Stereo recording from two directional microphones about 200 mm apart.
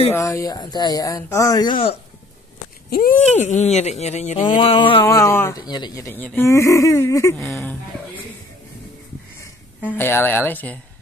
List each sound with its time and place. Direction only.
0.1 s speech: 15° left (ahead or behind)
2.9 s speech: 45° left (ahead or behind)
4.5 s speech: 25° left (ahead or behind)
5.0 s speech: 15° left (ahead or behind)
7.3 s speech: 5° left (ahead or behind)
9.8 s speech: 10° left (ahead or behind)